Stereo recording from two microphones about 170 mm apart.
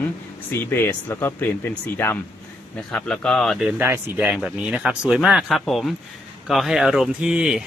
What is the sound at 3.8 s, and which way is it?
Speech, 10° right (ahead or behind).